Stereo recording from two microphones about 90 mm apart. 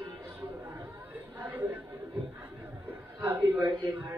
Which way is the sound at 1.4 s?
20° right (ahead or behind).